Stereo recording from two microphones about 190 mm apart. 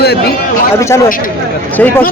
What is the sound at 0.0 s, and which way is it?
Speech, 60° left (ahead or behind).